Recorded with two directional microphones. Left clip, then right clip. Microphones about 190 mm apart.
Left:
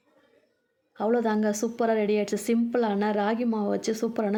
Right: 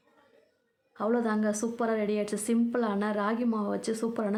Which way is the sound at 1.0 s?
15° left (ahead or behind).